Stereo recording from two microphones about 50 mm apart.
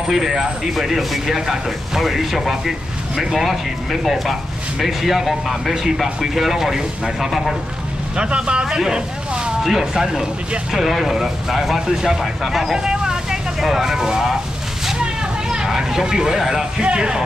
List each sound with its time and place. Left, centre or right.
0.0 s speech: centre
8.2 s speech: centre
15.4 s speech: centre